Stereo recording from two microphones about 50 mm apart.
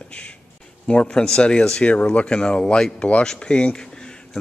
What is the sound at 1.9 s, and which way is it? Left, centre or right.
Speech, left.